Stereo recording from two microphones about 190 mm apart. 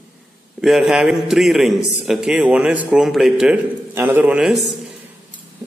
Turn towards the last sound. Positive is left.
turn(degrees=-5)  # may be behind; listen again after turning